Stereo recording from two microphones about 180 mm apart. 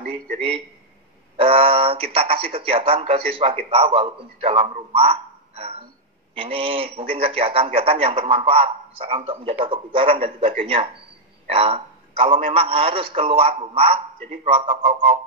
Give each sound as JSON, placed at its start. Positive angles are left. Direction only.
{"t": 0.3, "sound": "a man's voice", "side_deg": -35}
{"t": 1.3, "sound": "a sound", "side_deg": -30}
{"t": 2.1, "sound": "a man's voice", "side_deg": -30}